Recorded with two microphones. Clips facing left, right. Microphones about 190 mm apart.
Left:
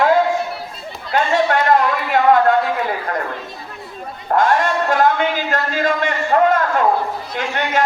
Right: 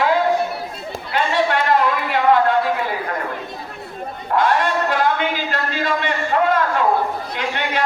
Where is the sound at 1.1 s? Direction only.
45° left (ahead or behind).